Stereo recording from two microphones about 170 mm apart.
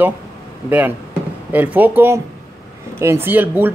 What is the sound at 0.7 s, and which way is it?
A man's voice, 10° right (ahead or behind).